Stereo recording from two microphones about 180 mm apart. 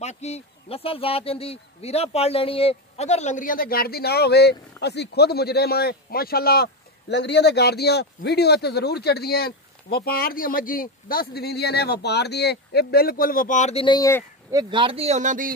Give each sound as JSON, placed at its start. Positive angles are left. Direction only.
{"t": 0.0, "sound": "speech", "side_deg": 40}
{"t": 13.8, "sound": "speech", "side_deg": 20}
{"t": 14.5, "sound": "speech", "side_deg": -25}